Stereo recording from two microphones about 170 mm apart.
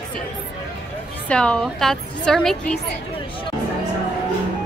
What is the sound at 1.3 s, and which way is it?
A woman's voice, 5° left (ahead or behind).